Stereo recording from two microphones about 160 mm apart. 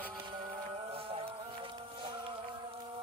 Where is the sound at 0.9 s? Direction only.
35° right (ahead or behind).